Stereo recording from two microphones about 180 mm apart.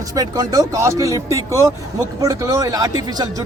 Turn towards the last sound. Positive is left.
turn(degrees=-20)  # may be behind; listen again after turning